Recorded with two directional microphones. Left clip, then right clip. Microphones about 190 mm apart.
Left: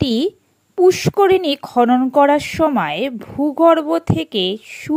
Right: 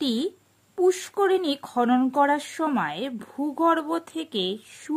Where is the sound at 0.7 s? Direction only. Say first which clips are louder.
Left 9 dB; 30° left (ahead or behind).